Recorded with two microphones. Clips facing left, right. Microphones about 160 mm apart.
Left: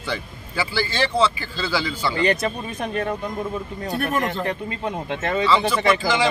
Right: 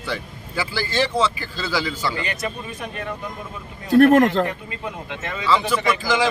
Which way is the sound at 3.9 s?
90° right.